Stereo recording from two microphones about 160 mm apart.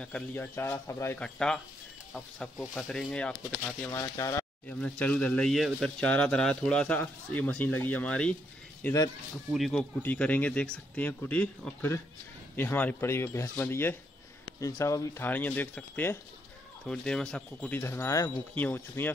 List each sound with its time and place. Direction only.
0.0 s speech: 10° left (ahead or behind)
1.2 s speech: 5° left (ahead or behind)
3.9 s speech: 20° left (ahead or behind)
4.6 s speech: 5° left (ahead or behind)